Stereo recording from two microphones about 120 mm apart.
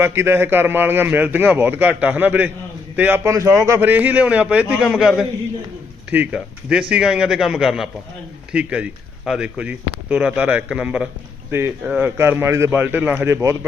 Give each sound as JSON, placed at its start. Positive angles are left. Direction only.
{"t": 0.0, "sound": "a man's voice", "side_deg": -20}